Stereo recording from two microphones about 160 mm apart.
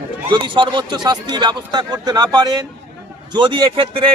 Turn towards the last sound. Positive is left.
turn(degrees=-35)  # may be behind; listen again after turning